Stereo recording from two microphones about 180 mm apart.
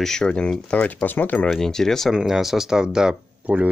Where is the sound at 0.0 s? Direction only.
5° left (ahead or behind).